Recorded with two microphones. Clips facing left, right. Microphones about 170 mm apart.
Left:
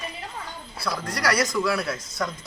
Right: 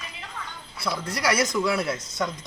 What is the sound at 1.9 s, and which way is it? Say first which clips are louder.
Speech: right 1 dB; centre (ahead or behind).